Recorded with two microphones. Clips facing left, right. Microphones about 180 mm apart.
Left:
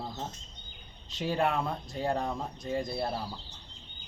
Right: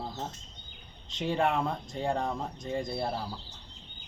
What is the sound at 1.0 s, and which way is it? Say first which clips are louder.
Speech: right 1 dB; 5° left (ahead or behind).